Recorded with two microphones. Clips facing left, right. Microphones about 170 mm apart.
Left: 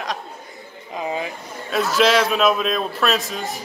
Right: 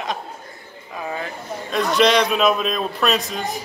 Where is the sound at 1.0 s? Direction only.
20° left (ahead or behind).